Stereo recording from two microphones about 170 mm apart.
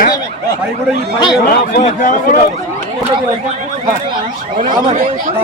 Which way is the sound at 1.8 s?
45° left (ahead or behind).